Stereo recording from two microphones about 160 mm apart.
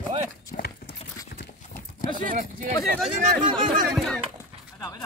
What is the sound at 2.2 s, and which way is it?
Speech, 55° right (ahead or behind).